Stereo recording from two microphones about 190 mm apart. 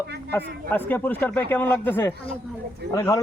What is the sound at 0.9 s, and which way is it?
Speech, 10° left (ahead or behind).